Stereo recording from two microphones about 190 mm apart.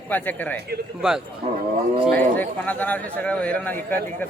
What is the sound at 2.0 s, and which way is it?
A man's voice, 5° left (ahead or behind).